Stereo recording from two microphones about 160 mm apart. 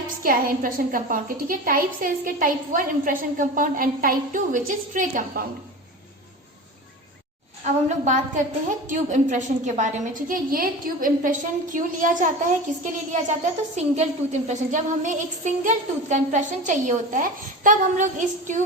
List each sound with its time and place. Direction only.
0.2 s a woman's voice: 60° right (ahead or behind)
7.6 s a woman's voice: 50° right (ahead or behind)